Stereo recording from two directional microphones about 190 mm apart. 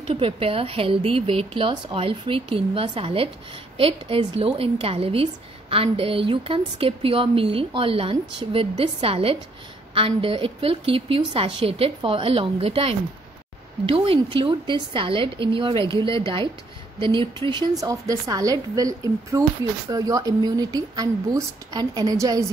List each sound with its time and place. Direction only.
0.1 s a woman's voice: 30° right (ahead or behind)